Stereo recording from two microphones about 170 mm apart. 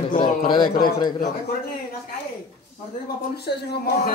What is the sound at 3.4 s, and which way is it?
Speech, 70° left (ahead or behind).